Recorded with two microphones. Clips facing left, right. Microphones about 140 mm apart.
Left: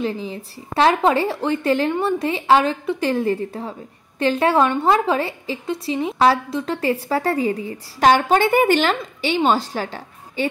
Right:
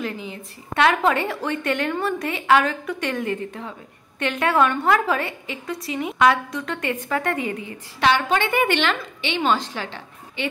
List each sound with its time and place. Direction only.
0.0 s a woman's voice: 30° left (ahead or behind)